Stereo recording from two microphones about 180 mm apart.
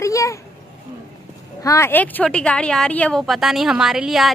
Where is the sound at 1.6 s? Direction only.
15° left (ahead or behind).